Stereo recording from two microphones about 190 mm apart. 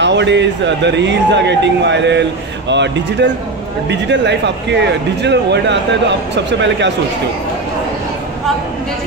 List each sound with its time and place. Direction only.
0.0 s speech: 70° right (ahead or behind)